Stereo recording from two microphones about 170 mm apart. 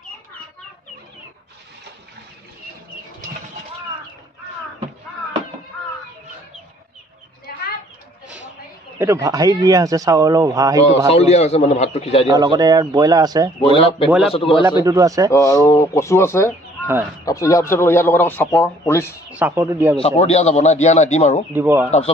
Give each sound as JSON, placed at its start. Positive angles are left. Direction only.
{"t": 8.9, "sound": "speech", "side_deg": -15}
{"t": 11.1, "sound": "a man's voice", "side_deg": 40}
{"t": 12.3, "sound": "speech", "side_deg": -25}
{"t": 13.6, "sound": "a man's voice", "side_deg": 30}
{"t": 14.9, "sound": "speech", "side_deg": -20}
{"t": 15.3, "sound": "a man's voice", "side_deg": 20}
{"t": 16.8, "sound": "speech", "side_deg": -10}
{"t": 17.2, "sound": "a man's voice", "side_deg": 20}
{"t": 19.3, "sound": "a man's voice", "side_deg": -10}
{"t": 20.0, "sound": "a man's voice", "side_deg": 40}
{"t": 21.5, "sound": "a man's voice", "side_deg": -15}